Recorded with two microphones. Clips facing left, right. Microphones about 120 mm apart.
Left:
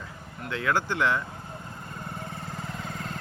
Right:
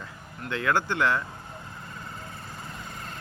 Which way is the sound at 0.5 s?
5° left (ahead or behind).